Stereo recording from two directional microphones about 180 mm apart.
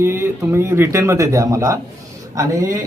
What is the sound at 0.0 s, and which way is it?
Speech, 15° right (ahead or behind).